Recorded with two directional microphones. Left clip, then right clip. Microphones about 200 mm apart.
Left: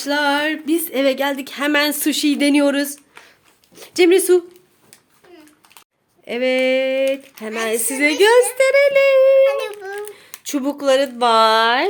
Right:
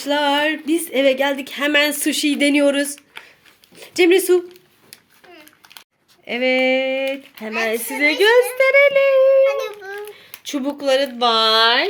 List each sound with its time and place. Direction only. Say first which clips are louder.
0.0 s speech: even; centre (ahead or behind)
6.2 s speech: even; 5° left (ahead or behind)
9.5 s a child's voice: left 1 dB; 25° left (ahead or behind)
10.1 s speech: left 1 dB; 10° left (ahead or behind)